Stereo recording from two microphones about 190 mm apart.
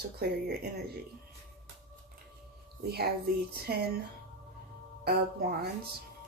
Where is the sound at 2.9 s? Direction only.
55° right (ahead or behind).